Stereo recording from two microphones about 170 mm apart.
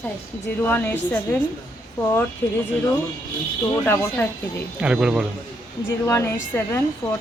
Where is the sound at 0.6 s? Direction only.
10° left (ahead or behind).